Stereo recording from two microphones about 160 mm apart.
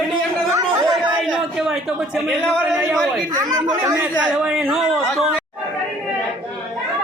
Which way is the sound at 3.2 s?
25° right (ahead or behind).